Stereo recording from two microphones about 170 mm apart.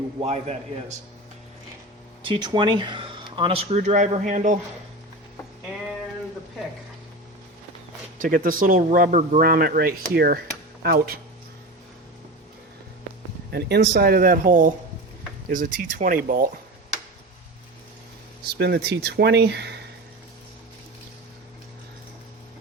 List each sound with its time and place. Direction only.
0.2 s speech: 40° right (ahead or behind)
2.2 s speech: 25° right (ahead or behind); by 4.6 s 45° right (ahead or behind)
8.2 s speech: 55° right (ahead or behind)
13.5 s speech: 70° right (ahead or behind); by 16.5 s 55° right (ahead or behind)
18.5 s speech: 75° right (ahead or behind)